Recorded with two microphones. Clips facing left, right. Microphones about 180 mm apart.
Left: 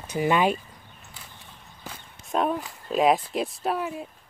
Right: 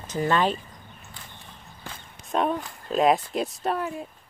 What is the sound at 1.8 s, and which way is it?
Speech, 5° left (ahead or behind).